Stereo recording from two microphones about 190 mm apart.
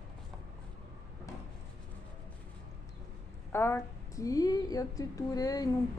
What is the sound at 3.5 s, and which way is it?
A woman's voice, 10° left (ahead or behind).